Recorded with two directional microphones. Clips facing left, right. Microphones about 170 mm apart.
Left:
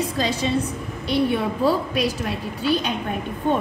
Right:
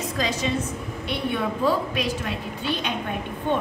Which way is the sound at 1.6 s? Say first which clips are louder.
Left 2 dB; 35° left (ahead or behind).